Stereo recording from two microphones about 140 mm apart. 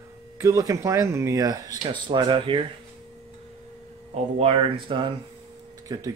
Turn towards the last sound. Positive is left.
turn(degrees=-30)  # may be behind; listen again after turning